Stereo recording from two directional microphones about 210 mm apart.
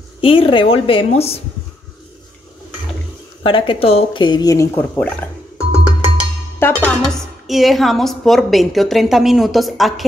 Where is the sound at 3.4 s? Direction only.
25° left (ahead or behind); by 5.3 s 10° left (ahead or behind).